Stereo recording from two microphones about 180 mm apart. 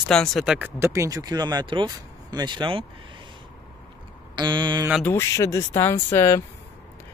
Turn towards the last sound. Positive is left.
turn(degrees=15)  # may be behind; listen again after turning